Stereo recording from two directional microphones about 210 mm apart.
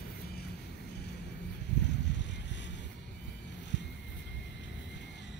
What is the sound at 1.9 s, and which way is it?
Vehicle, 55° left (ahead or behind).